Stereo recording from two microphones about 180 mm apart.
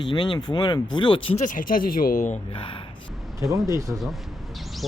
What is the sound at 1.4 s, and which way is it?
Speech, 50° left (ahead or behind).